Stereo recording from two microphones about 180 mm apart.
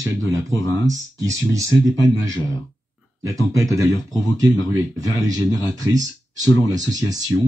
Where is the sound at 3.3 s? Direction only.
15° right (ahead or behind).